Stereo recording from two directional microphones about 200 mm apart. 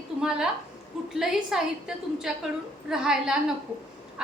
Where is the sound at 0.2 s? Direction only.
5° right (ahead or behind).